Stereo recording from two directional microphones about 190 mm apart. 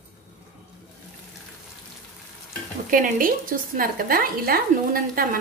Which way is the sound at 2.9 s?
45° right (ahead or behind).